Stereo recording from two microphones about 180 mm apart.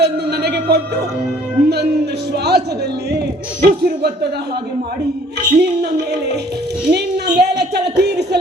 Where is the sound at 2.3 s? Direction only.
65° right (ahead or behind).